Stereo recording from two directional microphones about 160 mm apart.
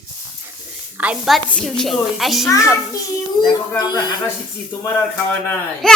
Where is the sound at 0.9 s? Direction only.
5° right (ahead or behind).